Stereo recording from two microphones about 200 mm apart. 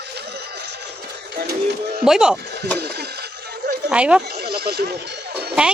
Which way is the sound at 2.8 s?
55° right (ahead or behind).